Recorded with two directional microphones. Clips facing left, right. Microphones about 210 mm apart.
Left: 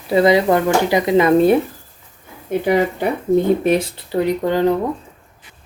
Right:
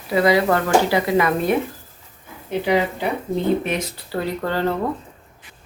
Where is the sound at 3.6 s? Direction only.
40° left (ahead or behind).